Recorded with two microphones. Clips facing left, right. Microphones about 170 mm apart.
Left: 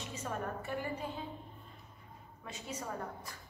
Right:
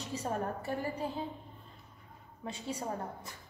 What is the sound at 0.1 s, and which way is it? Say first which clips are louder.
A woman's voice: right 5 dB; 35° right (ahead or behind).